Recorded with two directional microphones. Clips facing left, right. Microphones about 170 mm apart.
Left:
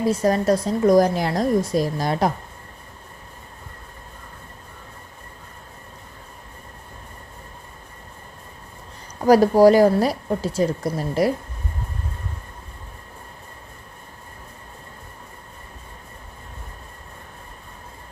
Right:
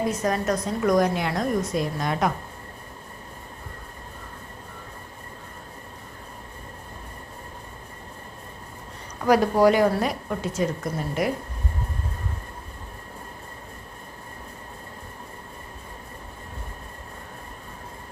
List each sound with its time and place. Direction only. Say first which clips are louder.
0.0 s a woman's voice: left 5 dB; 30° left (ahead or behind)
9.2 s a woman's voice: left 5 dB; 35° left (ahead or behind)